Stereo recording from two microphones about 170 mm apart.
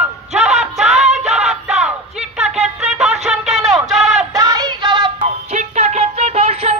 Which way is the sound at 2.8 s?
Centre (ahead or behind).